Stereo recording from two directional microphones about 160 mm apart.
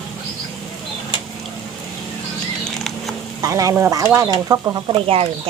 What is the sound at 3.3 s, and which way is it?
Stir, 20° right (ahead or behind).